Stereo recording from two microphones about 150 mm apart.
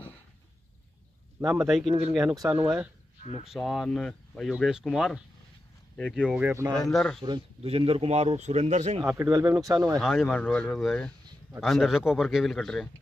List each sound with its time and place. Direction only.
1.4 s speech: 10° right (ahead or behind)
3.4 s speech: centre (ahead or behind)
6.3 s speech: 15° right (ahead or behind)
6.8 s speech: 5° left (ahead or behind)
7.2 s speech: 30° right (ahead or behind)
7.6 s a man's voice: 40° right (ahead or behind)
9.0 s speech: 15° right (ahead or behind)
9.9 s speech: centre (ahead or behind)
10.3 s speech: 10° left (ahead or behind)